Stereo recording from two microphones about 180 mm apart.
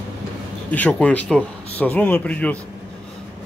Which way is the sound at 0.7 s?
10° left (ahead or behind).